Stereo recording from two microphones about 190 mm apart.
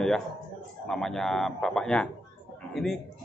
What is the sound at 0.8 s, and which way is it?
A man's voice, centre (ahead or behind).